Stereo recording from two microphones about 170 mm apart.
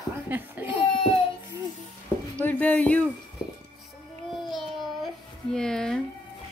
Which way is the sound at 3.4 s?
25° left (ahead or behind).